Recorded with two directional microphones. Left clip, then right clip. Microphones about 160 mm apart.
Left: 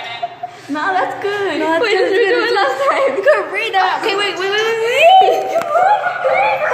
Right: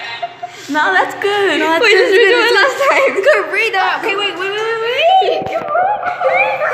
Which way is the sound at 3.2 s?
15° left (ahead or behind).